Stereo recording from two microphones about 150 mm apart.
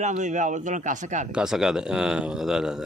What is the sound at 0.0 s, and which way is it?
A man's voice, 55° right (ahead or behind).